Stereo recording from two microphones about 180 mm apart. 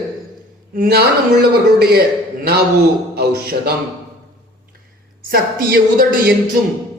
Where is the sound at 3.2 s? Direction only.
60° right (ahead or behind).